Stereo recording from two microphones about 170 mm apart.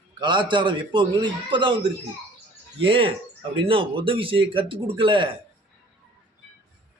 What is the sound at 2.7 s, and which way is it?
A man's voice, 30° right (ahead or behind).